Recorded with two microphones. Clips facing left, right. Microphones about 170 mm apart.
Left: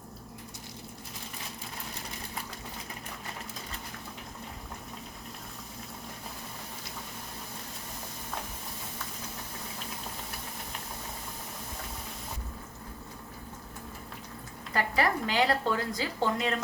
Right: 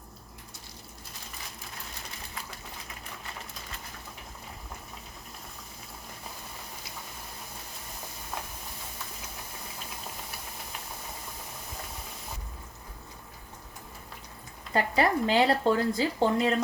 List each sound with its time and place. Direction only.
14.7 s speech: 25° right (ahead or behind)